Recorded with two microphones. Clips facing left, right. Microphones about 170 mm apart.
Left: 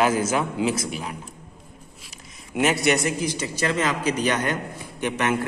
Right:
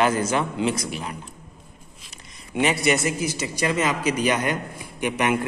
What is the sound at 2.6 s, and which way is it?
A man's voice, centre (ahead or behind).